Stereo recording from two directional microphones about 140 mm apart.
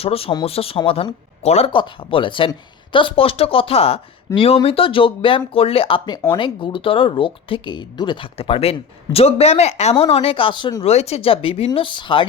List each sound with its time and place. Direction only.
0.0 s speech: 45° left (ahead or behind)
10.8 s speech: 50° left (ahead or behind)